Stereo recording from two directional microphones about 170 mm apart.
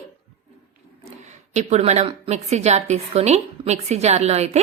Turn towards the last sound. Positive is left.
turn(degrees=-40)  # may be behind; listen again after turning